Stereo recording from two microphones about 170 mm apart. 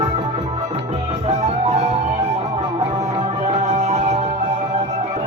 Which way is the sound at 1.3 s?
40° right (ahead or behind).